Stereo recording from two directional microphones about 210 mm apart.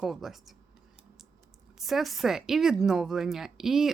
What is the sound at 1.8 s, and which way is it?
A woman's voice, centre (ahead or behind).